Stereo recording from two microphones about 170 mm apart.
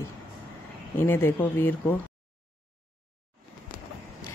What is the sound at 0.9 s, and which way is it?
Speech, 15° left (ahead or behind).